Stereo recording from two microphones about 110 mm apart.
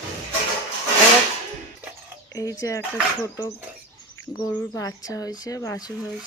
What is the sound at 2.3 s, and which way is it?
Speech, 30° left (ahead or behind).